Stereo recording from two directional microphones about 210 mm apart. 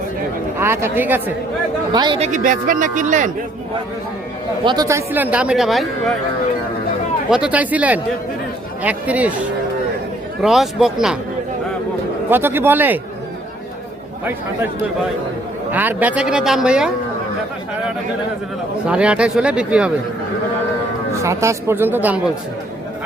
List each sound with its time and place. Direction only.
0.6 s a man's voice: 10° right (ahead or behind)
1.9 s speech: 20° right (ahead or behind); by 3.3 s 35° right (ahead or behind)
4.6 s a man's voice: 20° right (ahead or behind); by 6.1 s centre (ahead or behind)
7.3 s a man's voice: 5° right (ahead or behind)
10.4 s speech: centre (ahead or behind)
12.3 s a man's voice: 10° right (ahead or behind)
15.7 s speech: 10° right (ahead or behind)
18.9 s speech: 5° right (ahead or behind)
21.2 s a man's voice: 15° right (ahead or behind)